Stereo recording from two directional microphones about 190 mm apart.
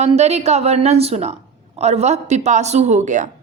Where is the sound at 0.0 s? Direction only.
35° right (ahead or behind).